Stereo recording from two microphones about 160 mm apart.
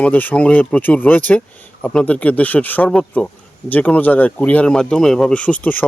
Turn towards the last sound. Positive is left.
turn(degrees=10)  # may be behind; listen again after turning